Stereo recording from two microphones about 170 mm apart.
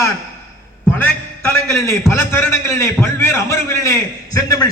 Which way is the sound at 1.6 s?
15° left (ahead or behind).